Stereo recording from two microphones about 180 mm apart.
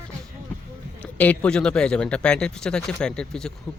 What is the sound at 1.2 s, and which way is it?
Speech, 5° left (ahead or behind).